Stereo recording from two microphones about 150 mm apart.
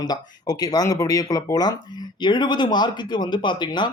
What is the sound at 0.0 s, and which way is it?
Speech, 25° left (ahead or behind).